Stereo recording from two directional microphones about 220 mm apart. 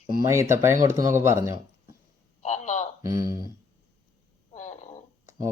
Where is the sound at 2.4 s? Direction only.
30° left (ahead or behind).